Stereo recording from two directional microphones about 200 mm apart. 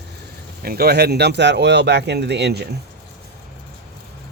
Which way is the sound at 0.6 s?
50° right (ahead or behind).